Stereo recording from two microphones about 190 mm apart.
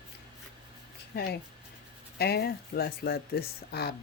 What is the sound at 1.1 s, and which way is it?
Speech, 60° left (ahead or behind).